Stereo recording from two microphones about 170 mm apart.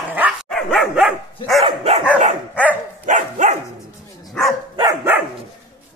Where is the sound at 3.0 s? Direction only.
45° right (ahead or behind).